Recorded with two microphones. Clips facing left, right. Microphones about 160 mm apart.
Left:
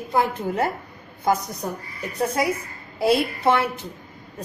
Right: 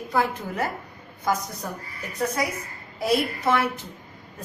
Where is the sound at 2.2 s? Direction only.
30° left (ahead or behind).